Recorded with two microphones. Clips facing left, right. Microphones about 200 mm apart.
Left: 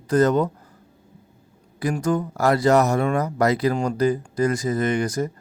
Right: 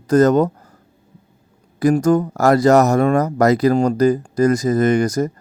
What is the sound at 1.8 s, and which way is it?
A man's voice, 40° right (ahead or behind).